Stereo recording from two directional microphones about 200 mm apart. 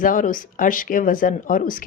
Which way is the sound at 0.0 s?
40° left (ahead or behind).